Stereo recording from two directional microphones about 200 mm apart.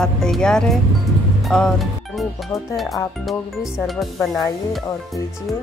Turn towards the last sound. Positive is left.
turn(degrees=0)  # may be behind; listen again after turning